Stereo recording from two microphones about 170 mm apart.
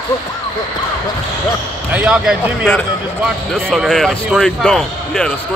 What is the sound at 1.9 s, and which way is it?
Speech, 5° right (ahead or behind).